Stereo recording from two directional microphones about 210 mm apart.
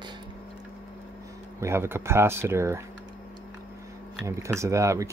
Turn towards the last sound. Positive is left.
turn(degrees=-15)  # may be behind; listen again after turning